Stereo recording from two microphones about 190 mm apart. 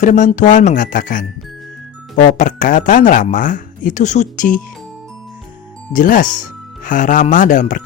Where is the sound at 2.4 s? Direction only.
45° left (ahead or behind).